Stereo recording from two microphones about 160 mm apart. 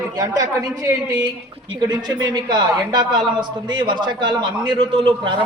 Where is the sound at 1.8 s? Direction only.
25° right (ahead or behind).